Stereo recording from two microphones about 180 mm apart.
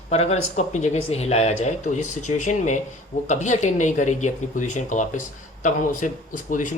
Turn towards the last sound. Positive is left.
turn(degrees=45)  # may be behind; listen again after turning